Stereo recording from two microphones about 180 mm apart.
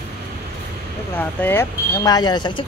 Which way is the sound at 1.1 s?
10° left (ahead or behind).